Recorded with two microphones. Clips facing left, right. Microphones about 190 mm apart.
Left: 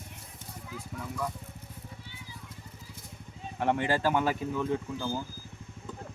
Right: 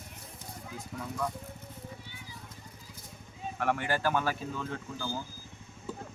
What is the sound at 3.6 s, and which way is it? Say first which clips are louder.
Speech: left 3 dB; 20° left (ahead or behind).